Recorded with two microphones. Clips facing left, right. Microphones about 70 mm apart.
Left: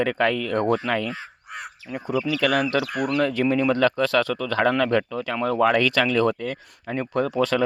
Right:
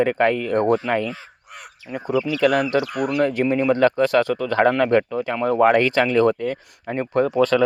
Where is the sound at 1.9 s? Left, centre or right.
Right.